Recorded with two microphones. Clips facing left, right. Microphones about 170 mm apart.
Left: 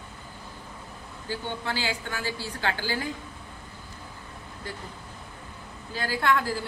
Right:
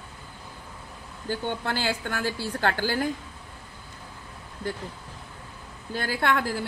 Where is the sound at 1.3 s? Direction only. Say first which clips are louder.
Right 3 dB; 55° right (ahead or behind).